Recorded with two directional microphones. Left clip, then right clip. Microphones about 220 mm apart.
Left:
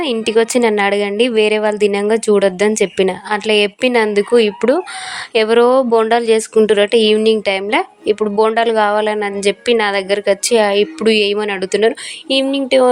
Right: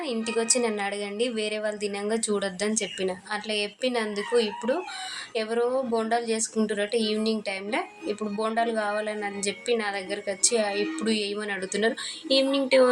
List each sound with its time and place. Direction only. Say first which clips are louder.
0.0 s speech: left 14 dB; 40° left (ahead or behind)